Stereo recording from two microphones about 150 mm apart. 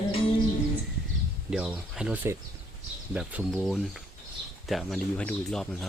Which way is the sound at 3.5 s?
5° left (ahead or behind).